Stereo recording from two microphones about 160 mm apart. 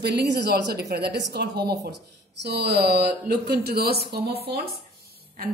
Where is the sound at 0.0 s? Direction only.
90° right.